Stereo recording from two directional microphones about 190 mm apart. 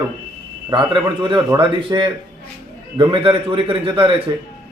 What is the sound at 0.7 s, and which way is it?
Speech, 25° right (ahead or behind).